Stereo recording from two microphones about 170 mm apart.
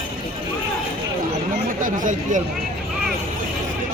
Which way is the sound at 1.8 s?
50° right (ahead or behind).